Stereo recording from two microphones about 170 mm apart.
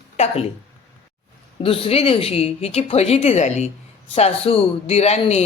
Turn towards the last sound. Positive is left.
turn(degrees=40)  # may be behind; listen again after turning